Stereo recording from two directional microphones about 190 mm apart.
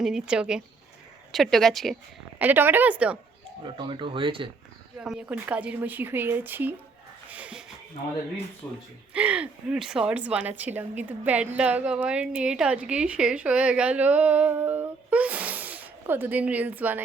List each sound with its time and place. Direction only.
0.0 s speech: 5° right (ahead or behind)
2.4 s a woman's voice: 10° right (ahead or behind)
3.6 s speech: 25° right (ahead or behind)
4.9 s a woman's voice: 5° right (ahead or behind)
7.3 s a sound: 5° right (ahead or behind)
8.6 s speech: 10° left (ahead or behind)
9.1 s a woman's voice: 5° right (ahead or behind)